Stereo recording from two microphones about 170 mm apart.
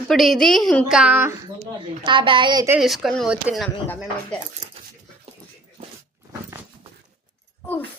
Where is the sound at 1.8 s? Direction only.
30° right (ahead or behind).